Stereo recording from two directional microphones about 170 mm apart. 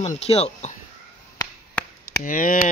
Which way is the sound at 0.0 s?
35° left (ahead or behind).